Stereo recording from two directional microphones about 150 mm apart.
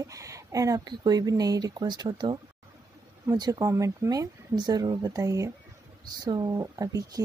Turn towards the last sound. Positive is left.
turn(degrees=-25)  # may be behind; listen again after turning